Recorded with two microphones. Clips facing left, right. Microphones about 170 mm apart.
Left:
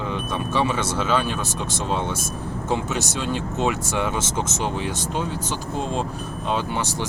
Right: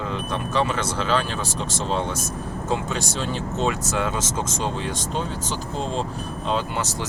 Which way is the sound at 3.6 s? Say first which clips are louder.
Even; 15° left (ahead or behind).